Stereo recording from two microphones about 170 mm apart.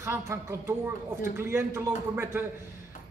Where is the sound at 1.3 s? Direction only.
15° right (ahead or behind).